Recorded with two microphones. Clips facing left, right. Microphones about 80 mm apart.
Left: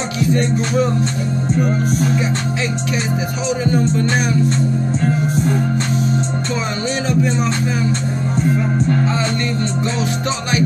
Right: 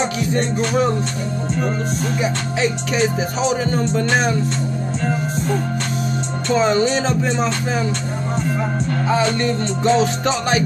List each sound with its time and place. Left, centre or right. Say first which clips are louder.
0.3 s music: left 5 dB; right
6.5 s music: right 10 dB; right